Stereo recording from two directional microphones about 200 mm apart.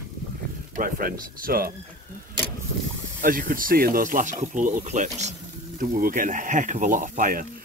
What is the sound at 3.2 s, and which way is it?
Speech, 45° right (ahead or behind).